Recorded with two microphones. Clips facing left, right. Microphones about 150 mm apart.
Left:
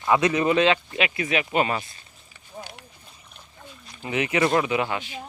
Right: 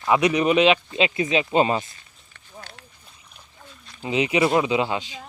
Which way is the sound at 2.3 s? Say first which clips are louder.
Left 3 dB; 15° left (ahead or behind).